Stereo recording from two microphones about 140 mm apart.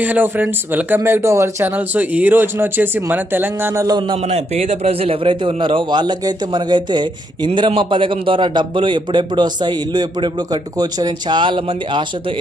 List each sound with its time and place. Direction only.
0.0 s speech: 10° right (ahead or behind); by 4.2 s 30° right (ahead or behind)
4.2 s a man's voice: 50° right (ahead or behind); by 12.0 s 35° right (ahead or behind)